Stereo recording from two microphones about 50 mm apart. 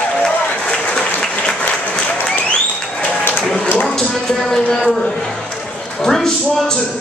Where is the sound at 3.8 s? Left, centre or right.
Centre.